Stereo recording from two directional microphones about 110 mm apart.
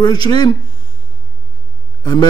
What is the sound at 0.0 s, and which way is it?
Speech, 40° left (ahead or behind).